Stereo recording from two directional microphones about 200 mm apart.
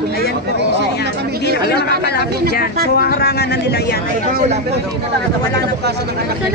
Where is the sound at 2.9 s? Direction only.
50° left (ahead or behind).